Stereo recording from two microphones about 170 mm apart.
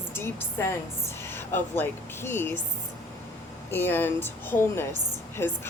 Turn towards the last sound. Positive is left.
turn(degrees=15)  # may be behind; listen again after turning